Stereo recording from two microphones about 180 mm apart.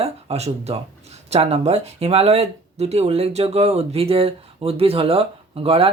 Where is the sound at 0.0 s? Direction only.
35° right (ahead or behind).